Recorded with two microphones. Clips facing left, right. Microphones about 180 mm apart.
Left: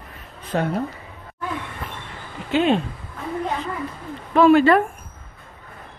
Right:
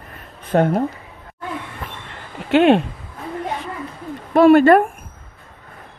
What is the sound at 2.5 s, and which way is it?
Speech, 65° right (ahead or behind).